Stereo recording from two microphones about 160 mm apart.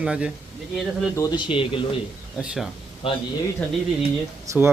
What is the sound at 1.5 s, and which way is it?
Speech, 35° left (ahead or behind).